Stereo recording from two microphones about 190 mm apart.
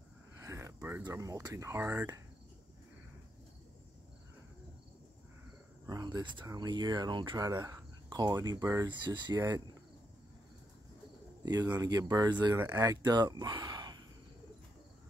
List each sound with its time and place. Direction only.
0.4 s speech: 15° right (ahead or behind)
5.9 s speech: 20° right (ahead or behind)
11.4 s speech: 20° right (ahead or behind)